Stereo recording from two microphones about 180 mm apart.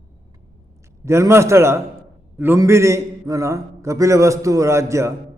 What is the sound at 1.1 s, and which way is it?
A man's voice, 15° right (ahead or behind).